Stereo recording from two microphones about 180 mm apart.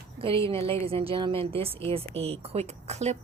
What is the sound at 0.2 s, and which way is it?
A woman's voice, 30° right (ahead or behind).